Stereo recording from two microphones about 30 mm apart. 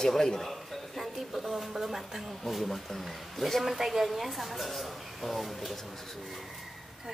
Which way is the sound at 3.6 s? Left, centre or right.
Centre.